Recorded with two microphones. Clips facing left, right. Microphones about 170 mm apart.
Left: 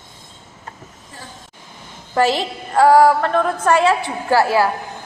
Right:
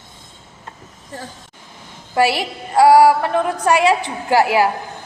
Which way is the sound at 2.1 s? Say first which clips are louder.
Even; 10° right (ahead or behind).